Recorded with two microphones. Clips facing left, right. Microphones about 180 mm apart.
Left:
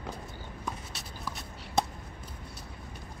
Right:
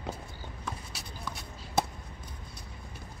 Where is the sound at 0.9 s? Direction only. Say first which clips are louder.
Left 1 dB; centre (ahead or behind).